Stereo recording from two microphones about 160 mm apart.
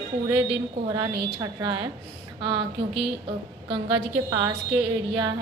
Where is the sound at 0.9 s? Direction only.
25° right (ahead or behind).